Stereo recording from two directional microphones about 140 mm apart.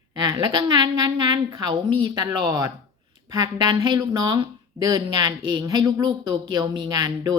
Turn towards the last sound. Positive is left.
turn(degrees=-30)  # may be behind; listen again after turning